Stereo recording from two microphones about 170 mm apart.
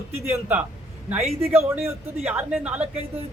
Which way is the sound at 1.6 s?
35° right (ahead or behind).